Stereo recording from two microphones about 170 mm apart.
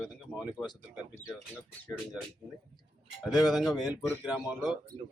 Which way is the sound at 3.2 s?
Centre (ahead or behind).